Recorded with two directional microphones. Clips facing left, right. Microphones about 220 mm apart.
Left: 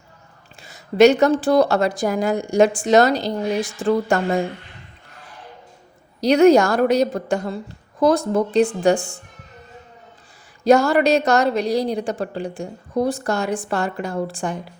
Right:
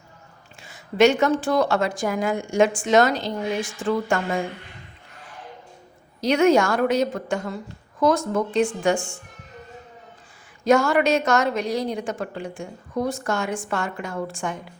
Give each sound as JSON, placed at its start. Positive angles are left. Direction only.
{"t": 0.6, "sound": "a woman's voice", "side_deg": 40}
{"t": 6.1, "sound": "a woman's voice", "side_deg": 35}
{"t": 10.6, "sound": "a woman's voice", "side_deg": 35}